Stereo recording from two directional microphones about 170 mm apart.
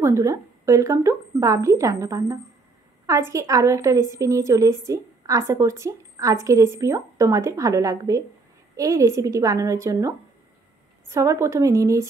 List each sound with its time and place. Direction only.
0.0 s a woman's voice: 20° right (ahead or behind)